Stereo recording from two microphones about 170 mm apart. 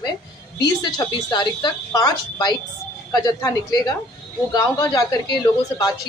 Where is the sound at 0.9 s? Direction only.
25° left (ahead or behind).